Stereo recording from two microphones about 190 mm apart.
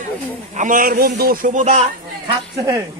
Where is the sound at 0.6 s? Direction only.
45° right (ahead or behind).